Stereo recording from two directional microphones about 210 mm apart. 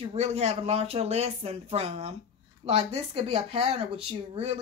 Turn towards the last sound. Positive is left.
turn(degrees=-30)  # may be behind; listen again after turning